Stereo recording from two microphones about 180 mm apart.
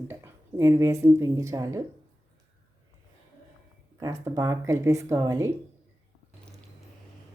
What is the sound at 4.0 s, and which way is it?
Speech, 20° right (ahead or behind).